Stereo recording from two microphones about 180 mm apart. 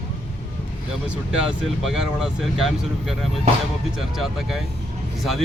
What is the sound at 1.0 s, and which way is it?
Speech, 5° right (ahead or behind).